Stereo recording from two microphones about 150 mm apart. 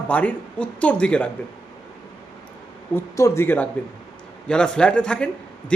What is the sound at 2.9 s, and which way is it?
A man's voice, 20° left (ahead or behind).